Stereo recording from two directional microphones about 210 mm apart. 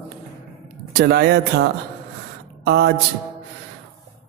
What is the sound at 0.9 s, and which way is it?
Speech, 50° right (ahead or behind).